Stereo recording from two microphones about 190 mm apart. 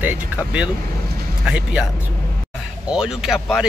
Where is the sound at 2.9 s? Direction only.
5° right (ahead or behind).